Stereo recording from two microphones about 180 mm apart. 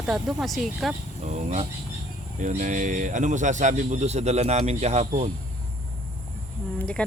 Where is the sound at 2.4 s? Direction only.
45° right (ahead or behind).